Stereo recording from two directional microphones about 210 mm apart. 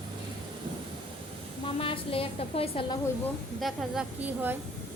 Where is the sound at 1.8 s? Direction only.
25° left (ahead or behind).